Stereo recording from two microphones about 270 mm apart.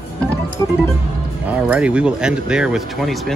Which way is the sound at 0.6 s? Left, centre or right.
Centre.